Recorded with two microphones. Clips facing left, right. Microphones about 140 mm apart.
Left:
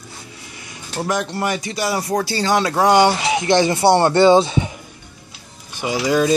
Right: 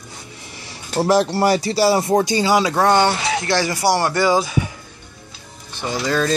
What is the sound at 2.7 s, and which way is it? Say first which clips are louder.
Speech: left 2 dB; 10° left (ahead or behind).